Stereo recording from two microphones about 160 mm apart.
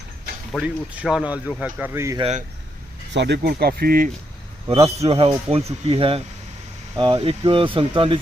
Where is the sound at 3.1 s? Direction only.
90° right; by 4.1 s 65° right (ahead or behind).